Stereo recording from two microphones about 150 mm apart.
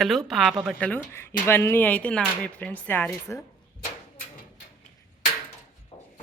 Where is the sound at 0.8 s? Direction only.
10° left (ahead or behind).